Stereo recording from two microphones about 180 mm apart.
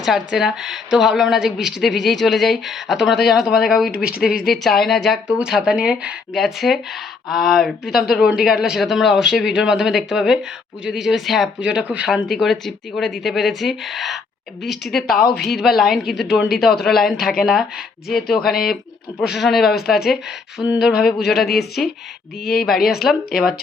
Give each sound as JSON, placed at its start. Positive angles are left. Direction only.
{"t": 0.0, "sound": "a woman's voice", "side_deg": -5}
{"t": 3.9, "sound": "a woman's voice", "side_deg": 55}
{"t": 4.5, "sound": "a woman's voice", "side_deg": 0}
{"t": 15.0, "sound": "a woman's voice", "side_deg": 55}
{"t": 15.4, "sound": "a woman's voice", "side_deg": 0}
{"t": 21.2, "sound": "a woman's voice", "side_deg": 65}
{"t": 22.9, "sound": "a woman's voice", "side_deg": 0}